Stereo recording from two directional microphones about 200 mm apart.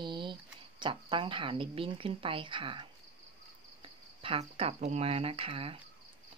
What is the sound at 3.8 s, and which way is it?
Speech, 25° right (ahead or behind).